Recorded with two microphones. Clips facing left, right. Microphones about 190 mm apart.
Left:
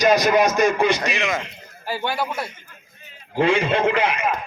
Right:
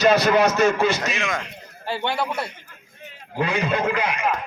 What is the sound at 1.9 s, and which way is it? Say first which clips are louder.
Speech: even; 5° left (ahead or behind).